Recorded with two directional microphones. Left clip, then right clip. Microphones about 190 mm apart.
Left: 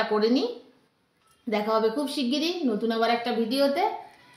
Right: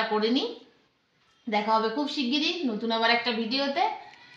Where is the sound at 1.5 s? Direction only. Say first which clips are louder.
Even; 10° right (ahead or behind).